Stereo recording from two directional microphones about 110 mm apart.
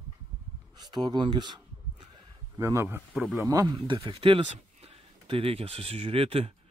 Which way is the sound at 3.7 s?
45° right (ahead or behind).